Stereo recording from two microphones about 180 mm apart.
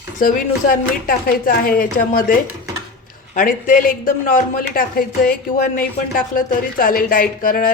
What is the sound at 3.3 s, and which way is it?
Speech, 45° left (ahead or behind).